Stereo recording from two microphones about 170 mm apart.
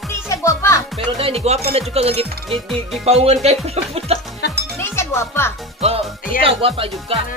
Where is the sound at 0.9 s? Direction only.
35° right (ahead or behind).